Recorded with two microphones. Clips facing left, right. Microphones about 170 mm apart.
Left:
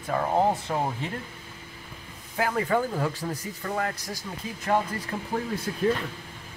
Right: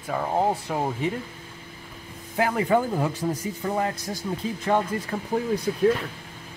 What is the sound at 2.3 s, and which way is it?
Speech, 20° right (ahead or behind).